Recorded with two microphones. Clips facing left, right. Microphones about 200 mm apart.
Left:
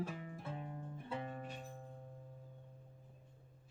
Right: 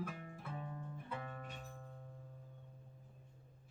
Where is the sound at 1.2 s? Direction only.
30° left (ahead or behind).